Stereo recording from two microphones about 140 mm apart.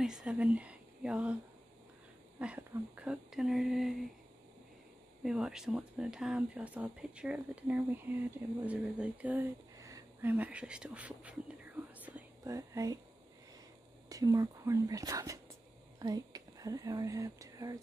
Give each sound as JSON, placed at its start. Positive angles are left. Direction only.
{"t": 0.0, "sound": "speech", "side_deg": -5}
{"t": 5.2, "sound": "speech", "side_deg": -5}
{"t": 9.8, "sound": "a sound", "side_deg": -20}
{"t": 12.4, "sound": "speech", "side_deg": -25}
{"t": 14.0, "sound": "speech", "side_deg": -25}